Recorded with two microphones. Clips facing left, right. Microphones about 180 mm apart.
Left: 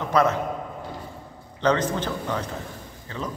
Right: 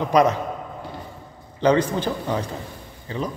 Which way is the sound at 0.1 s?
15° right (ahead or behind).